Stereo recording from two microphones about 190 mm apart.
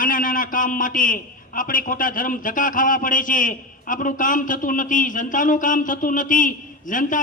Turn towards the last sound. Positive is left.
turn(degrees=45)  # may be behind; listen again after turning